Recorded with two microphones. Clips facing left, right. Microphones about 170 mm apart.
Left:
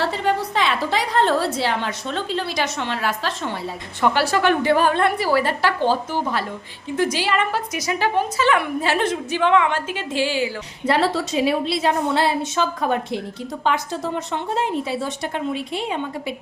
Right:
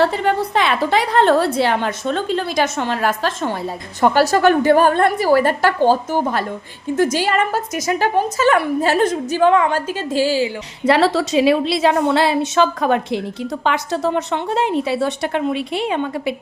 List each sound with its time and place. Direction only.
0.0 s a woman's voice: 55° right (ahead or behind); by 10.5 s 35° right (ahead or behind)
10.8 s a woman's voice: 90° right; by 16.3 s 70° right (ahead or behind)